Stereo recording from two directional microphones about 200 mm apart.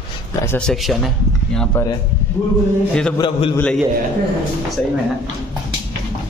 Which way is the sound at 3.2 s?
25° left (ahead or behind).